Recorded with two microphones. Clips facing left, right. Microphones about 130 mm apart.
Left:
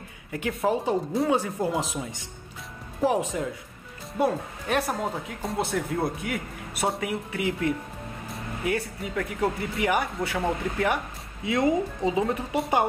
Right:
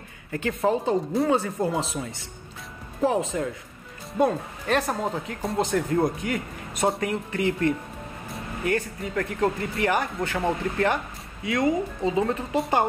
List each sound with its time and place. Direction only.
0.3 s speech: 5° left (ahead or behind)
11.4 s speech: 25° left (ahead or behind)
12.1 s speech: 10° left (ahead or behind)